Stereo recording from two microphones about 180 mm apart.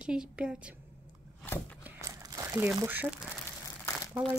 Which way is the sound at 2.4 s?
10° right (ahead or behind).